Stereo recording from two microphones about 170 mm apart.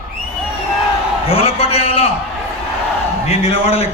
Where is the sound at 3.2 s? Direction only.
40° left (ahead or behind).